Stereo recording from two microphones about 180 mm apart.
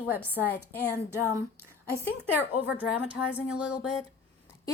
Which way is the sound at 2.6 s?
10° right (ahead or behind).